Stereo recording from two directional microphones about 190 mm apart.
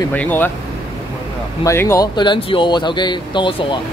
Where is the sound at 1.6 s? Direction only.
15° left (ahead or behind).